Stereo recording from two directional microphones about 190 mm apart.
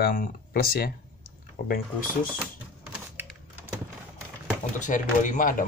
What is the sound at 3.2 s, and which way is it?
Typing, 10° right (ahead or behind).